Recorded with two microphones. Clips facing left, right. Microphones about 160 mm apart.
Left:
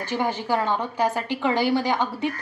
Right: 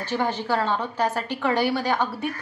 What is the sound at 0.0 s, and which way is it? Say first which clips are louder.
A woman's voice: even; 15° left (ahead or behind).